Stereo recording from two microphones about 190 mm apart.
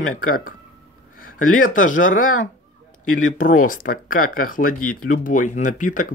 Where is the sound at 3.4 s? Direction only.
45° left (ahead or behind).